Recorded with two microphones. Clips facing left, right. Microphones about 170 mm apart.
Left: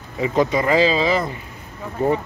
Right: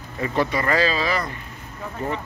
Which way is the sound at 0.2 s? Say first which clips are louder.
Left 4 dB; 15° left (ahead or behind).